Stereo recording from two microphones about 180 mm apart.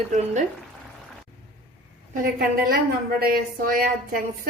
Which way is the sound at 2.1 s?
50° right (ahead or behind).